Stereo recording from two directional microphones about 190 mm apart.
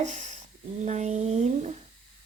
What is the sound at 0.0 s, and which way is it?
Speech, 40° right (ahead or behind).